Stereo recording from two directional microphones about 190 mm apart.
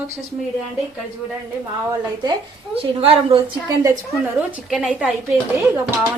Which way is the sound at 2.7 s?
30° right (ahead or behind).